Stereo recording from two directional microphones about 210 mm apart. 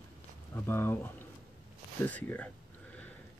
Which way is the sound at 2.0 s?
5° left (ahead or behind).